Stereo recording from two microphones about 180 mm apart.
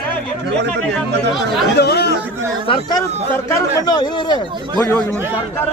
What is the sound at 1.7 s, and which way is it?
Speech, 65° left (ahead or behind).